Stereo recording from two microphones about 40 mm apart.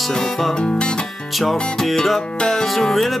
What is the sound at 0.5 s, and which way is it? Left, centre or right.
Speech, left.